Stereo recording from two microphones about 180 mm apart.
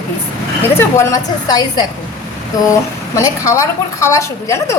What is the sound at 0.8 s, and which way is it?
A woman's voice, 15° left (ahead or behind).